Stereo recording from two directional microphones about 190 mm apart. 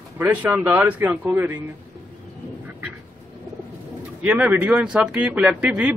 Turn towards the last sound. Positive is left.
turn(degrees=-5)  # may be behind; listen again after turning